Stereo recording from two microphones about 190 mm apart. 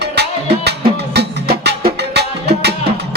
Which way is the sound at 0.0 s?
60° right (ahead or behind).